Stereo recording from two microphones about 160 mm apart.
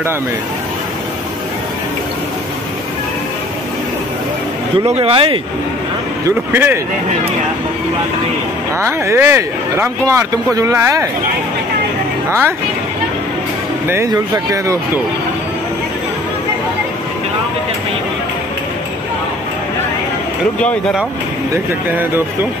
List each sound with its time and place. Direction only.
4.7 s speech: 40° right (ahead or behind)
6.2 s speech: 15° right (ahead or behind)
8.7 s speech: 15° right (ahead or behind)
12.3 s speech: 15° right (ahead or behind)
13.8 s speech: 20° right (ahead or behind)